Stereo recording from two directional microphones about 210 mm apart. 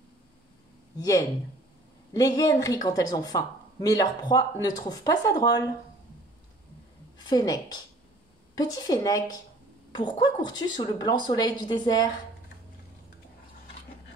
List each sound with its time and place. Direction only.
0.9 s speech: 15° left (ahead or behind)
7.2 s a woman's voice: 20° left (ahead or behind)